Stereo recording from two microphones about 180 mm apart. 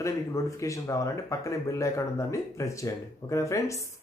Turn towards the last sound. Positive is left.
turn(degrees=15)  # may be behind; listen again after turning